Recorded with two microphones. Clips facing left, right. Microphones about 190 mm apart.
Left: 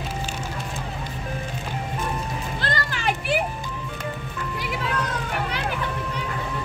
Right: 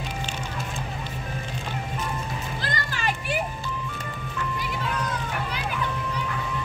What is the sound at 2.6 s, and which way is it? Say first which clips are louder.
Music: left 4 dB; 70° left (ahead or behind).